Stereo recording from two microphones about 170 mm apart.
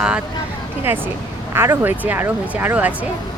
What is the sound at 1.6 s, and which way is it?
Speech, 10° right (ahead or behind).